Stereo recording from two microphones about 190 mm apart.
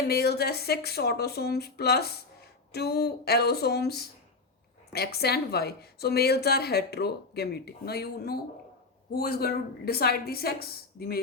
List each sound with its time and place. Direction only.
0.1 s a woman's voice: 55° left (ahead or behind)